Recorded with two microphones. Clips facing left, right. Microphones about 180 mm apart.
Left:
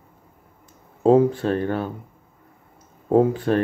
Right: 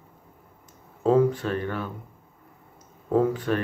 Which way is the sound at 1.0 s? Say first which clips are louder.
Left 4 dB; 30° left (ahead or behind).